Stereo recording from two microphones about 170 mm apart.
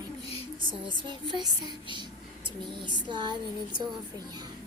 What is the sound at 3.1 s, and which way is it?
Music, 25° right (ahead or behind).